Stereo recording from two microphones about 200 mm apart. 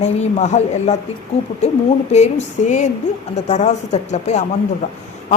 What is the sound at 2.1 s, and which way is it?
A woman's voice, 35° left (ahead or behind).